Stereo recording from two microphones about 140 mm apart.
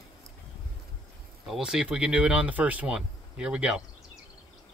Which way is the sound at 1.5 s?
5° right (ahead or behind).